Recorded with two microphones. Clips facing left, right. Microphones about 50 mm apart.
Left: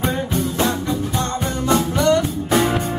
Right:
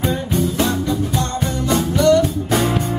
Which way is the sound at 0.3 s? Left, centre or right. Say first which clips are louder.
Right 2 dB; left.